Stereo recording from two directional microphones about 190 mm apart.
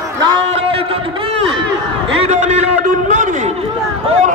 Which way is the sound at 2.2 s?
35° right (ahead or behind).